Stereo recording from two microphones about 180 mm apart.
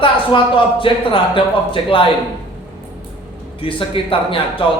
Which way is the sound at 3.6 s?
30° left (ahead or behind).